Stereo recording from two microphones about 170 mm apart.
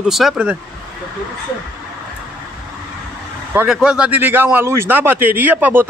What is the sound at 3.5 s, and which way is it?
Speech, 5° right (ahead or behind).